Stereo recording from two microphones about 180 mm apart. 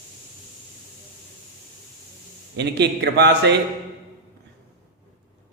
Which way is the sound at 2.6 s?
70° right (ahead or behind).